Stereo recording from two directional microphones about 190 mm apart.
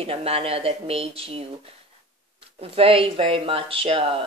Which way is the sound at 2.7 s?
30° right (ahead or behind).